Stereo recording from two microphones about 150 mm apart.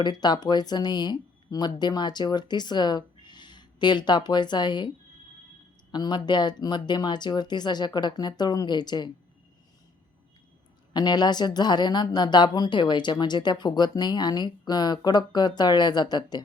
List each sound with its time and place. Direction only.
0.0 s speech: 30° left (ahead or behind)
5.9 s speech: 30° left (ahead or behind)
10.9 s speech: 30° left (ahead or behind)